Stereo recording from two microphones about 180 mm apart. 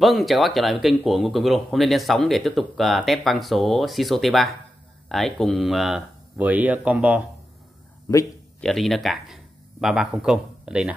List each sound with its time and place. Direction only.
0.0 s speech: centre (ahead or behind)
8.1 s speech: 20° left (ahead or behind)
8.5 s speech: centre (ahead or behind)